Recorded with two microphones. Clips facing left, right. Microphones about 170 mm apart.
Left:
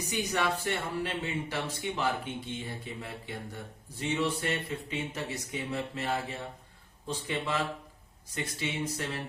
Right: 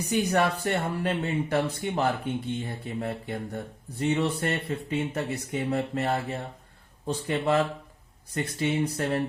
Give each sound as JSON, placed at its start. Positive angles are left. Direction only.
{"t": 0.1, "sound": "speech", "side_deg": -60}